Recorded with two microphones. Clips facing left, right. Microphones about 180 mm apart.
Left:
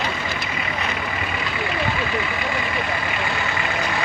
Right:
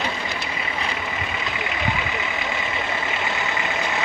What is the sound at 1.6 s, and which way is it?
Vehicle, 20° right (ahead or behind).